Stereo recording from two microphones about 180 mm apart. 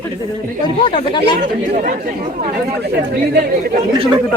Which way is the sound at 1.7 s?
45° right (ahead or behind).